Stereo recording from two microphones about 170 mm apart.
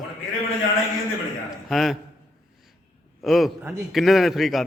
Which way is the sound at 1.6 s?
Centre (ahead or behind).